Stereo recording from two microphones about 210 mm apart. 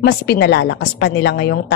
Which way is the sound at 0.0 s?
50° left (ahead or behind).